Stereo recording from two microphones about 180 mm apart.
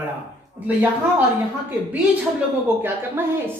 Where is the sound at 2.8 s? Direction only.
10° right (ahead or behind).